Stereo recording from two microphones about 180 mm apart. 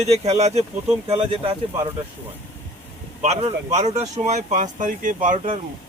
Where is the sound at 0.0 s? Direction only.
35° right (ahead or behind).